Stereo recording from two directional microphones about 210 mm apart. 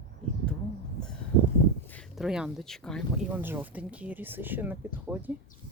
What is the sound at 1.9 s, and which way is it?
Speech, centre (ahead or behind).